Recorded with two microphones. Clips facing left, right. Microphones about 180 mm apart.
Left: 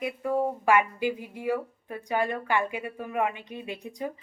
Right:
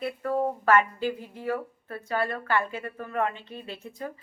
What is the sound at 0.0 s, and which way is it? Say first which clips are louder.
Speech: even; 10° left (ahead or behind).